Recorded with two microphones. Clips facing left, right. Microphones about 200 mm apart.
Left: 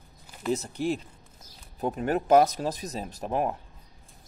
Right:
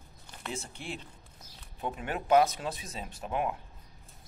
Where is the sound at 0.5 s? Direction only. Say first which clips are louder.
Left 12 dB; 40° left (ahead or behind).